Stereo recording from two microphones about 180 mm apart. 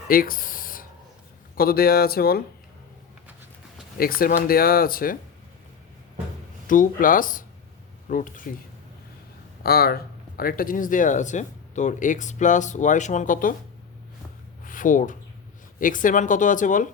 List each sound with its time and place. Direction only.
0.1 s a sound: 50° left (ahead or behind)
1.5 s speech: 55° left (ahead or behind)
3.9 s speech: 55° left (ahead or behind)
6.7 s speech: 50° left (ahead or behind)
9.6 s speech: 55° left (ahead or behind)
14.6 s a sound: 50° left (ahead or behind)
15.8 s speech: 50° left (ahead or behind)